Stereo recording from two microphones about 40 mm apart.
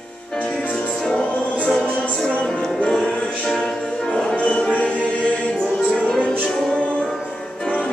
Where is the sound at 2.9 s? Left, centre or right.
Centre.